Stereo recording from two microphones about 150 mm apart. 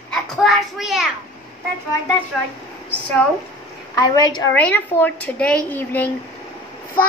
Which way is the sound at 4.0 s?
25° left (ahead or behind).